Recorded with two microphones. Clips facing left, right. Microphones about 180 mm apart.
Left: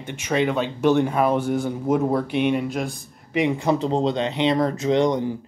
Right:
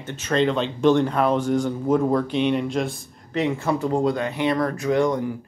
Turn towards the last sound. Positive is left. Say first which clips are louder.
# left 1 dB
turn(degrees=25)  # may be behind; listen again after turning